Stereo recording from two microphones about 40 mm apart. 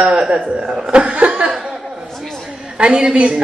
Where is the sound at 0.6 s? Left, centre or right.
Centre.